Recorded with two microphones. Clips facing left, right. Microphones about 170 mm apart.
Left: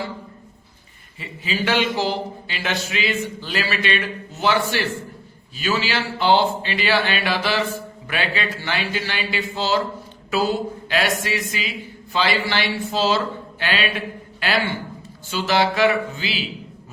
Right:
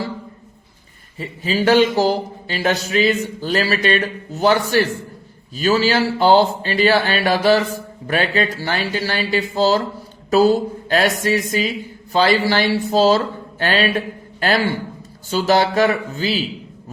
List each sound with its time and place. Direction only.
1.2 s a man's voice: 40° right (ahead or behind)